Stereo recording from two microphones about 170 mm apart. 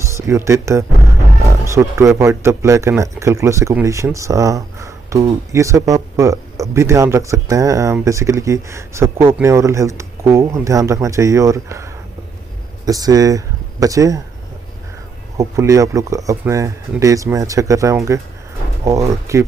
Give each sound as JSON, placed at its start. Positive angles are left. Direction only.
{"t": 0.0, "sound": "speech", "side_deg": -15}
{"t": 15.3, "sound": "speech", "side_deg": -20}